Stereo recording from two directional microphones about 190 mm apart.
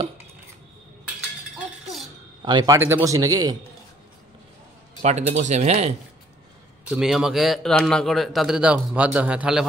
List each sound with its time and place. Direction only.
2.4 s speech: 20° right (ahead or behind)
5.0 s speech: 35° right (ahead or behind)
6.9 s a man's voice: 5° right (ahead or behind)